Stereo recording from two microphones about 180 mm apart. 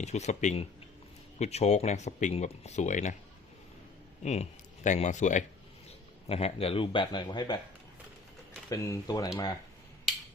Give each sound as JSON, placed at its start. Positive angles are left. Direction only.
{"t": 0.0, "sound": "speech", "side_deg": 40}
{"t": 4.2, "sound": "speech", "side_deg": 40}
{"t": 8.7, "sound": "speech", "side_deg": 15}